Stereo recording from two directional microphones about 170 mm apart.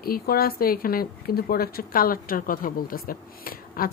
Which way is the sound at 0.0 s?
60° left (ahead or behind).